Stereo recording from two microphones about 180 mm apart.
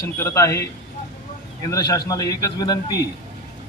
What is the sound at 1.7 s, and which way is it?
A man's voice, 20° left (ahead or behind).